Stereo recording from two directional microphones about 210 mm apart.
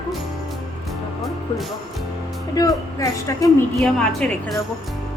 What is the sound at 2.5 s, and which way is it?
Speech, 15° left (ahead or behind).